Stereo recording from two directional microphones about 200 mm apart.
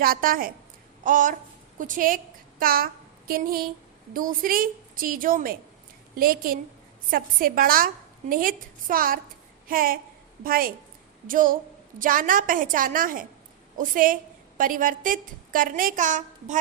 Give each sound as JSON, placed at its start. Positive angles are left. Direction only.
{"t": 0.0, "sound": "a woman's voice", "side_deg": -45}
{"t": 1.0, "sound": "a sound", "side_deg": -40}
{"t": 1.8, "sound": "a woman's voice", "side_deg": -40}